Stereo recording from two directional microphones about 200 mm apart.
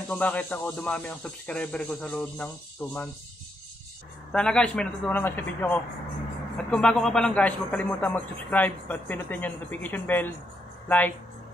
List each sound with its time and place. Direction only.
0.1 s speech: 5° left (ahead or behind)
4.3 s a man's voice: 5° left (ahead or behind)